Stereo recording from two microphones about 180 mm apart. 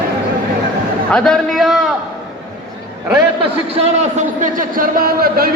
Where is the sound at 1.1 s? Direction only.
5° left (ahead or behind).